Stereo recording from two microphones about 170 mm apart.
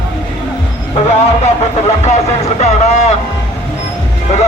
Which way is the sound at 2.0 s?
40° left (ahead or behind).